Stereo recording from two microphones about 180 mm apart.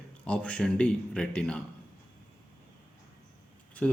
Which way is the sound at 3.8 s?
5° left (ahead or behind).